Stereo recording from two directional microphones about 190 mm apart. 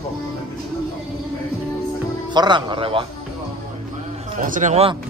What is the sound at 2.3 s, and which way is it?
Speech, 25° right (ahead or behind).